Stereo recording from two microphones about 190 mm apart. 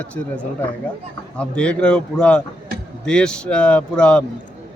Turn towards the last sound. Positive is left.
turn(degrees=5)  # may be behind; listen again after turning